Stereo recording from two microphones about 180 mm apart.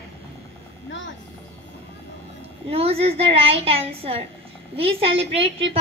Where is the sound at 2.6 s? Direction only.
35° right (ahead or behind).